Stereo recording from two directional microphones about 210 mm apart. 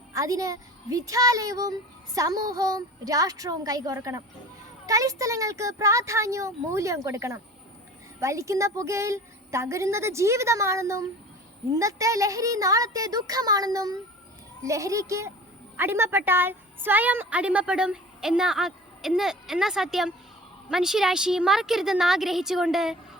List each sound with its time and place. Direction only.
0.1 s a child's voice: 15° right (ahead or behind)